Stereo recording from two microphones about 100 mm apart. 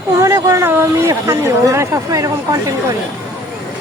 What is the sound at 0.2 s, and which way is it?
Speech, 30° right (ahead or behind).